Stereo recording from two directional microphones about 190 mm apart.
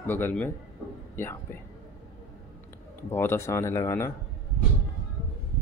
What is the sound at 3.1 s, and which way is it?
Speech, 10° left (ahead or behind).